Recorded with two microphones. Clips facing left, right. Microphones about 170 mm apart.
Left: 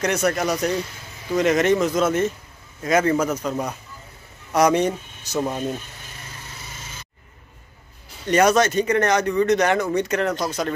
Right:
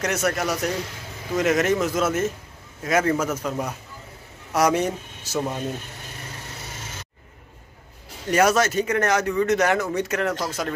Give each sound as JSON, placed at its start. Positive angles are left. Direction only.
{"t": 0.0, "sound": "speech", "side_deg": 0}
{"t": 6.6, "sound": "a sound", "side_deg": -75}
{"t": 8.3, "sound": "speech", "side_deg": -5}